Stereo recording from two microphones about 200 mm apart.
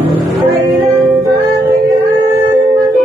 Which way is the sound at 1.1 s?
10° right (ahead or behind).